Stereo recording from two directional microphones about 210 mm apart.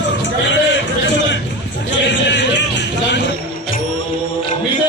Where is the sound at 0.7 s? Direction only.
60° left (ahead or behind).